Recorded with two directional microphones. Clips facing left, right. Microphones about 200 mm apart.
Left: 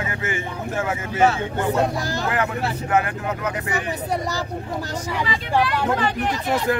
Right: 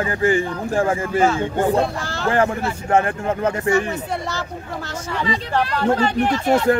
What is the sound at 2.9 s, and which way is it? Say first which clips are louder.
Speech: right 5 dB; 30° right (ahead or behind).